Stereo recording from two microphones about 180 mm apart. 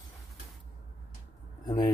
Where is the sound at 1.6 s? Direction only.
25° left (ahead or behind).